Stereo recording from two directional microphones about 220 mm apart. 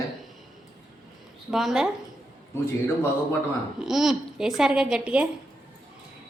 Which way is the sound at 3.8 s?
Centre (ahead or behind).